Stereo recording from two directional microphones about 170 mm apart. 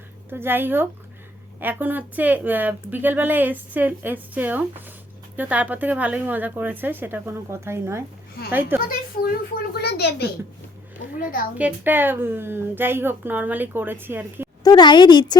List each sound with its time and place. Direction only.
0.3 s speech: 15° right (ahead or behind)
9.8 s a woman's voice: 75° left (ahead or behind)
11.2 s a child's voice: 55° left (ahead or behind)
11.5 s speech: 10° right (ahead or behind)
14.6 s a woman's voice: 25° left (ahead or behind)